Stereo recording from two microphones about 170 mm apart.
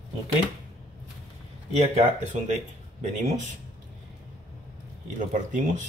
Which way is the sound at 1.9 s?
45° right (ahead or behind).